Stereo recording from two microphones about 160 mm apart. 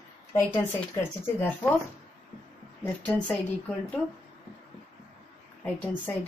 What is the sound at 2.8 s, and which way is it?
Speech, 10° left (ahead or behind).